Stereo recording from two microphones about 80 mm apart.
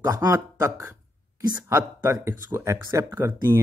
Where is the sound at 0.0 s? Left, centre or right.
Right.